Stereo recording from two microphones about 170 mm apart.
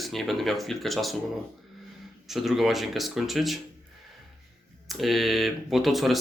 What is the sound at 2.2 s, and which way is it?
Speech, centre (ahead or behind).